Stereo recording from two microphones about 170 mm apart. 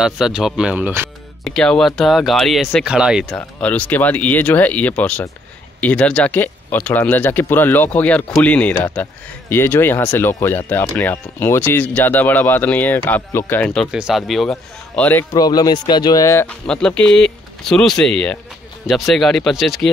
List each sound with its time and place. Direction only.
0.0 s speech: 5° right (ahead or behind)
1.4 s speech: 5° left (ahead or behind)
3.3 s speech: 10° left (ahead or behind)
13.9 s speech: centre (ahead or behind)
15.3 s speech: 20° left (ahead or behind)
16.4 s speech: 5° left (ahead or behind)